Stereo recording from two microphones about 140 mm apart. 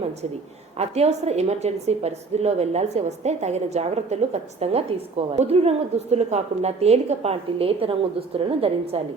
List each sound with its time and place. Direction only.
0.8 s a woman's voice: 50° right (ahead or behind)